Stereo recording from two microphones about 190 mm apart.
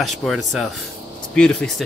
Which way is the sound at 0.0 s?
Centre (ahead or behind).